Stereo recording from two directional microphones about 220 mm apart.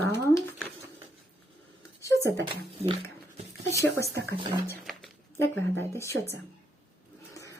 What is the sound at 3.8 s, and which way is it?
Speech, 45° right (ahead or behind).